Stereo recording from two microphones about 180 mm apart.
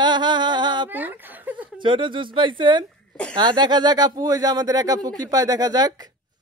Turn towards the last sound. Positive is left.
turn(degrees=-20)  # may be behind; listen again after turning